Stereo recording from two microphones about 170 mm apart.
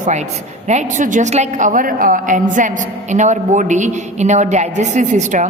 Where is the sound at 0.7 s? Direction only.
45° right (ahead or behind).